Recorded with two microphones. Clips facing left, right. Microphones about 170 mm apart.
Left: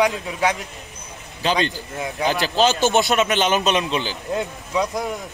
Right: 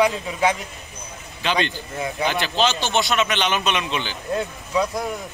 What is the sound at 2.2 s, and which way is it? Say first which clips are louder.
A man's voice: left 3 dB; 40° left (ahead or behind).